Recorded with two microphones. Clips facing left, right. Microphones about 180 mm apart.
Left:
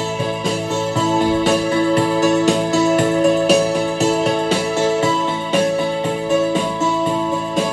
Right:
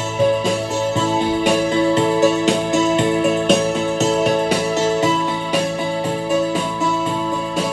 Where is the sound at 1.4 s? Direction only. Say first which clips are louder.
Even; 20° right (ahead or behind).